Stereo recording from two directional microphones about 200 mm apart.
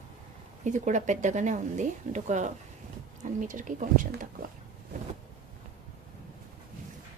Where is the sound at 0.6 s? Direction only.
35° right (ahead or behind).